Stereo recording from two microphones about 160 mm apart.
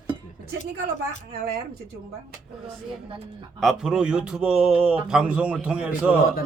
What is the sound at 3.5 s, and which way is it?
A man's voice, centre (ahead or behind).